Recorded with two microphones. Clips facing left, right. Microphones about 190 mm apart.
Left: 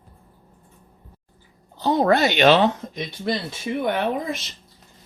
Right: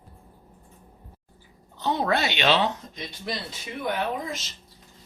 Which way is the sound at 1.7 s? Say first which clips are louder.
Left 6 dB; 40° left (ahead or behind).